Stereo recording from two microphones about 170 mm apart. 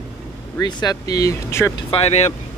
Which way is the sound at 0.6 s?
25° left (ahead or behind).